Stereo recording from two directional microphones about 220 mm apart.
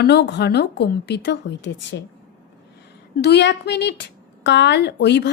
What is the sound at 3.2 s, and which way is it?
A woman's voice, 50° left (ahead or behind).